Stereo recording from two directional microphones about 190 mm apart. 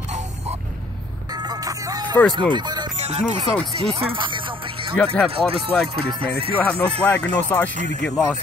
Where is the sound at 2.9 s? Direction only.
35° right (ahead or behind).